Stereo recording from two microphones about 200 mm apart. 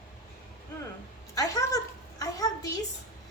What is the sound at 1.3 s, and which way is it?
A woman's voice, 15° left (ahead or behind).